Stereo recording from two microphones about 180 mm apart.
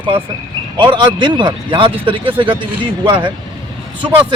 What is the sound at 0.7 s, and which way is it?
A man's voice, 25° right (ahead or behind).